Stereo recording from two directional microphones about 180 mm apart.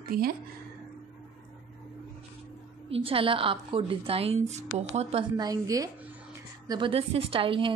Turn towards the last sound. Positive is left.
turn(degrees=-30)  # may be behind; listen again after turning